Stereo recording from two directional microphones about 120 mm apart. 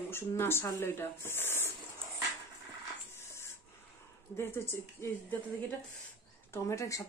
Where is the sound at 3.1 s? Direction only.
20° left (ahead or behind).